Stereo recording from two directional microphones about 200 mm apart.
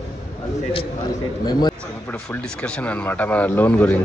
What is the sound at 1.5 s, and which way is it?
Speech, 20° left (ahead or behind).